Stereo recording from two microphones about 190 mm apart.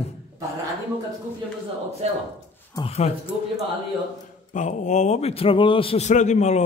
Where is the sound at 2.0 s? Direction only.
35° right (ahead or behind).